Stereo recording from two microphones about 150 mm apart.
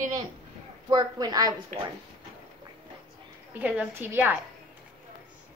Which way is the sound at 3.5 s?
10° right (ahead or behind).